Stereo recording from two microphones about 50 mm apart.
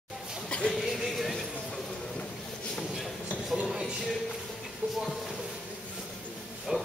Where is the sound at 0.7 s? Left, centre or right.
Centre.